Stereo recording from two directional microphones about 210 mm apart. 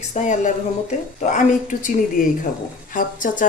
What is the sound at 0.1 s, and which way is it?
Speech, 35° left (ahead or behind).